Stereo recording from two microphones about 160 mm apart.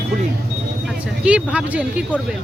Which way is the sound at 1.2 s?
5° right (ahead or behind).